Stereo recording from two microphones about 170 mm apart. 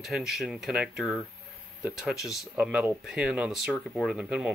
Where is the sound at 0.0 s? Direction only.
Centre (ahead or behind).